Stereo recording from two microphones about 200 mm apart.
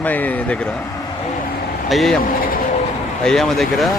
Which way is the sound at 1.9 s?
Centre (ahead or behind).